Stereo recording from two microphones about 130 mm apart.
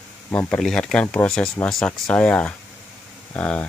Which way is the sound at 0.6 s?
Centre (ahead or behind).